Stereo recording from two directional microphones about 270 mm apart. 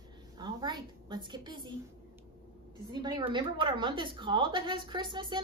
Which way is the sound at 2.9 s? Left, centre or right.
Centre.